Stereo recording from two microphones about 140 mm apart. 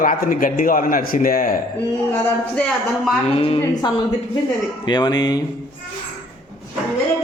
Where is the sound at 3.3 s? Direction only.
45° left (ahead or behind).